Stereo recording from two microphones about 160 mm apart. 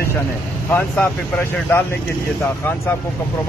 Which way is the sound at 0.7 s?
15° left (ahead or behind).